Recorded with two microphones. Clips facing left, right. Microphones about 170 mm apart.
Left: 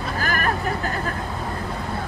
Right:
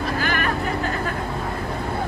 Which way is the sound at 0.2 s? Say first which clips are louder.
Left 2 dB; 40° left (ahead or behind).